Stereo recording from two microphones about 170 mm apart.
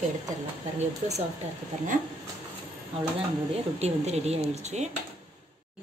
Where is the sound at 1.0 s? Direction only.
40° right (ahead or behind).